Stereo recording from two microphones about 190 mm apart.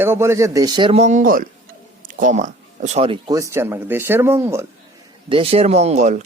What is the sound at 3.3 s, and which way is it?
Speech, 15° right (ahead or behind).